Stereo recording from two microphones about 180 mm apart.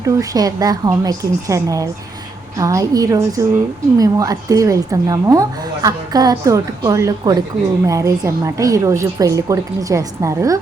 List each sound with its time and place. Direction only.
0.0 s a woman's voice: 20° right (ahead or behind)